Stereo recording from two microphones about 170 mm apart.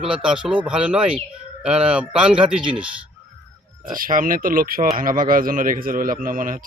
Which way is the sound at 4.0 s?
55° right (ahead or behind).